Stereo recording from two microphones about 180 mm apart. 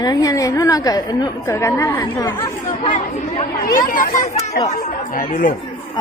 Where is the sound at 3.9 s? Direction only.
50° left (ahead or behind).